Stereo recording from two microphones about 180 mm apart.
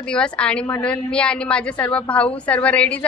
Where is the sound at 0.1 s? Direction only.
5° left (ahead or behind).